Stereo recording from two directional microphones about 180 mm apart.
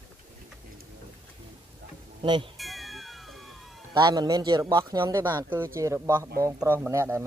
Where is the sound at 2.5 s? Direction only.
Centre (ahead or behind).